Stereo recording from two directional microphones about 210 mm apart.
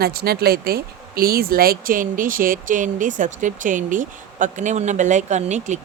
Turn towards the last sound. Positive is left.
turn(degrees=-35)  # may be behind; listen again after turning